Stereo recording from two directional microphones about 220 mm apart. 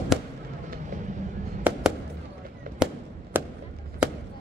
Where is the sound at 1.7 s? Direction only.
10° right (ahead or behind).